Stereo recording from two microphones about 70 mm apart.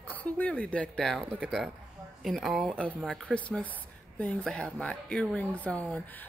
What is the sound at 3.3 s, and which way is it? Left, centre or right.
Speech, centre.